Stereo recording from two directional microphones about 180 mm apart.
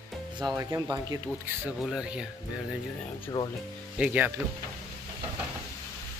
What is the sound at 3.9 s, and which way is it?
Speech, 10° right (ahead or behind).